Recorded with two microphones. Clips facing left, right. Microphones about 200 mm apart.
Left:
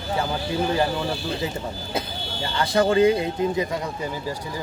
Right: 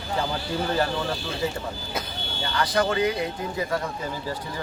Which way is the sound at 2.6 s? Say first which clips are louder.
Left 5 dB; 25° left (ahead or behind).